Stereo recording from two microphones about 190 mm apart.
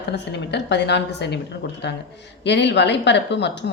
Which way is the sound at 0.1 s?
65° left (ahead or behind).